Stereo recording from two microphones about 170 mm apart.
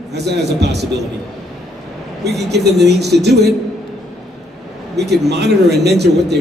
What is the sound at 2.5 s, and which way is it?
Speech, 80° right.